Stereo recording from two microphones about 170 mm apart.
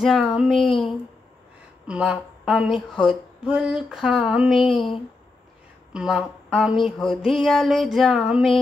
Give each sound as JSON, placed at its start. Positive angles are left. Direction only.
{"t": 0.0, "sound": "speech", "side_deg": 0}
{"t": 1.9, "sound": "speech", "side_deg": -5}
{"t": 5.9, "sound": "speech", "side_deg": -5}